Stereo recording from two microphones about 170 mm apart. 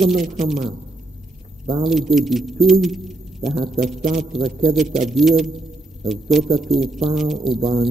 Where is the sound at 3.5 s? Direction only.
30° right (ahead or behind).